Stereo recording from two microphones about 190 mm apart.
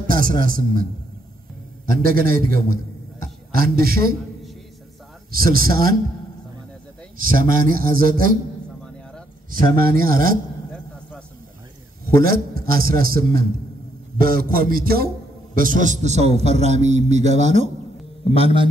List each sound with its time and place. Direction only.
0.0 s speech: 45° right (ahead or behind)
1.9 s a man's voice: 50° right (ahead or behind)
5.3 s a man's voice: 50° right (ahead or behind)
7.2 s a man's voice: 50° right (ahead or behind)
9.5 s a man's voice: 50° right (ahead or behind)
12.1 s a man's voice: 50° right (ahead or behind); by 18.7 s 30° right (ahead or behind)